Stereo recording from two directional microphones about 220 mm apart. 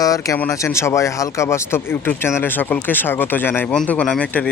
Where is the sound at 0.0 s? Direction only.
15° left (ahead or behind).